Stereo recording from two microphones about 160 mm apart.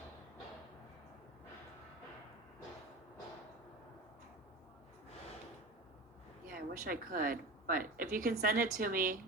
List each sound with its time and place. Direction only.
6.5 s a woman's voice: 60° right (ahead or behind)